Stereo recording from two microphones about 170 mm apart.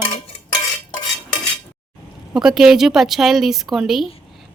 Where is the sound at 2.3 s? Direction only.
5° right (ahead or behind).